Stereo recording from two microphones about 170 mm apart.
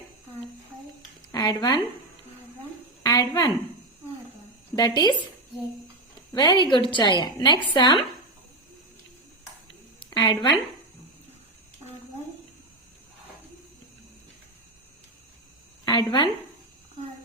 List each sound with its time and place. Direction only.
1.3 s speech: 20° left (ahead or behind)
3.0 s a sound: 20° left (ahead or behind)
4.7 s speech: 25° left (ahead or behind)
6.3 s a woman's voice: 25° left (ahead or behind)
10.0 s a woman's voice: 25° left (ahead or behind)
15.8 s a woman's voice: 25° left (ahead or behind)